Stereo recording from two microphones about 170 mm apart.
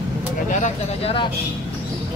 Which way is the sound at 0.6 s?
35° left (ahead or behind).